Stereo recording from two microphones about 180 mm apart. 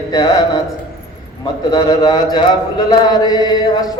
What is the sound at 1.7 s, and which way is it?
Speech, 20° left (ahead or behind).